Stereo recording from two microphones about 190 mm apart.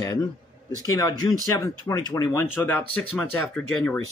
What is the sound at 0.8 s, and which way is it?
Speech, 20° left (ahead or behind).